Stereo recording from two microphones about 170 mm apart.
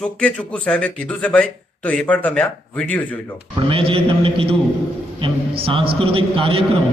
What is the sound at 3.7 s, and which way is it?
A man's voice, 30° right (ahead or behind).